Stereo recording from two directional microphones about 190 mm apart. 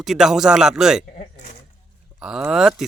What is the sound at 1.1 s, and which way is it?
Speech, 40° left (ahead or behind).